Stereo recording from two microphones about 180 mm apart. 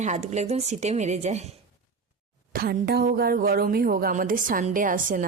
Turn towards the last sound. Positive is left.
turn(degrees=-45)  # may be behind; listen again after turning